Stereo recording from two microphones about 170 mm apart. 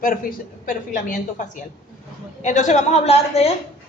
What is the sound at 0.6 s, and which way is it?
Speech, 50° left (ahead or behind).